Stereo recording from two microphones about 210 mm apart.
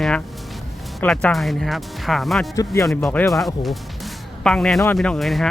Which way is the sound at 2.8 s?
5° left (ahead or behind).